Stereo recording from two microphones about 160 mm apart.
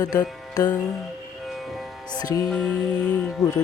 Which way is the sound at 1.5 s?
Centre (ahead or behind).